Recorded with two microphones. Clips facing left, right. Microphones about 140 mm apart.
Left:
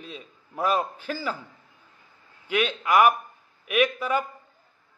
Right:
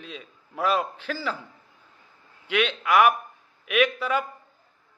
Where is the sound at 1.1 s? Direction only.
10° left (ahead or behind).